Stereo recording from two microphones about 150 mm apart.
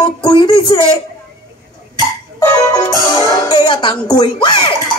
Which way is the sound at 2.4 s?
20° left (ahead or behind).